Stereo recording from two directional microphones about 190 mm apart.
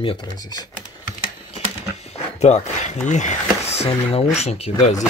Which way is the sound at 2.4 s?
35° left (ahead or behind).